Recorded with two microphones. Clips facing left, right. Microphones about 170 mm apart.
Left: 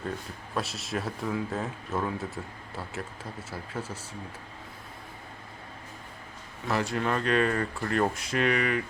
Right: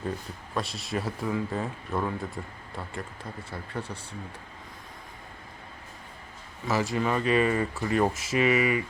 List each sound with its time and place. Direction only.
0.5 s speech: 5° left (ahead or behind)
6.7 s speech: centre (ahead or behind)